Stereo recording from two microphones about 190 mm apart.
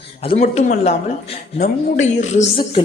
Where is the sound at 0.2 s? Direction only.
30° left (ahead or behind).